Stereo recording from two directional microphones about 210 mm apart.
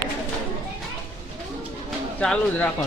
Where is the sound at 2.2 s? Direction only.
5° left (ahead or behind).